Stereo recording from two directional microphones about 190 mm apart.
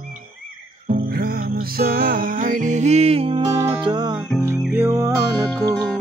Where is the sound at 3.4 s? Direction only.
20° right (ahead or behind).